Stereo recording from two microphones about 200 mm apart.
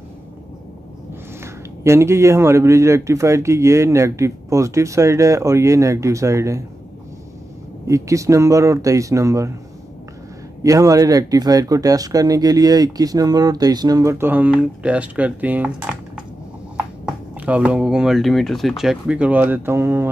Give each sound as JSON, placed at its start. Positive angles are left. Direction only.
{"t": 1.4, "sound": "speech", "side_deg": -15}
{"t": 7.8, "sound": "speech", "side_deg": -15}
{"t": 10.6, "sound": "speech", "side_deg": -15}
{"t": 17.5, "sound": "speech", "side_deg": -5}